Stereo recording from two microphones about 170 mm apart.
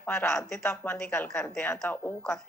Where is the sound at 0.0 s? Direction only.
10° left (ahead or behind).